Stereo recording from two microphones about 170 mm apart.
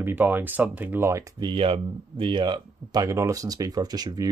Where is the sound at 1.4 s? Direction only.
30° right (ahead or behind).